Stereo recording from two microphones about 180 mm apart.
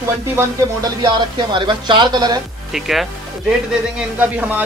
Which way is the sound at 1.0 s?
25° right (ahead or behind).